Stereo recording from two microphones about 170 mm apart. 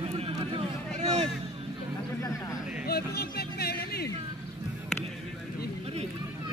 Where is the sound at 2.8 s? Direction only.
65° left (ahead or behind).